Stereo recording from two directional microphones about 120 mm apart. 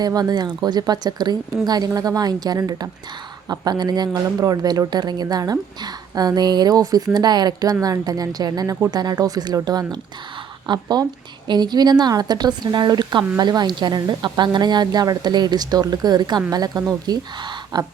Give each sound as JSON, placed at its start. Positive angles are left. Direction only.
{"t": 0.0, "sound": "speech", "side_deg": -35}